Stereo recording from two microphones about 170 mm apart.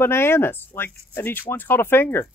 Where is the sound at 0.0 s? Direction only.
15° left (ahead or behind).